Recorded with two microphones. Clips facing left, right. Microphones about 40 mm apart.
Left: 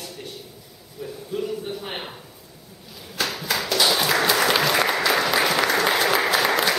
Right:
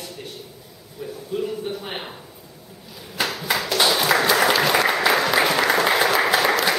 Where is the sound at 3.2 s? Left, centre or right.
Centre.